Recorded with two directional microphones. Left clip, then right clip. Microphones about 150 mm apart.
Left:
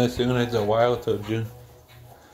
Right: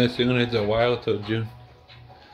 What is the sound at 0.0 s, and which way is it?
Speech, 20° right (ahead or behind).